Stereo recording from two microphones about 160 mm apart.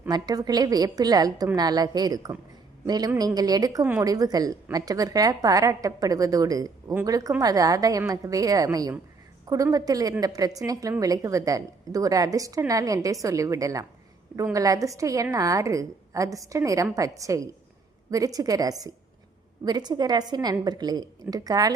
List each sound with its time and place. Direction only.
0.1 s a woman's voice: 25° right (ahead or behind)